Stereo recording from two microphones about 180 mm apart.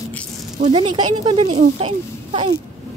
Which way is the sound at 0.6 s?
30° right (ahead or behind).